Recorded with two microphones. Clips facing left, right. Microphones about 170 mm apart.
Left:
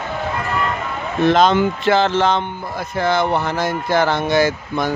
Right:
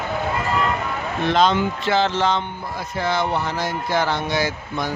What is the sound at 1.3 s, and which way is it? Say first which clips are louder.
Speech: left 1 dB; 55° left (ahead or behind).